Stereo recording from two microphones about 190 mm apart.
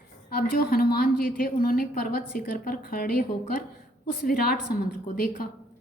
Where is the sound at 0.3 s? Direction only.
55° left (ahead or behind).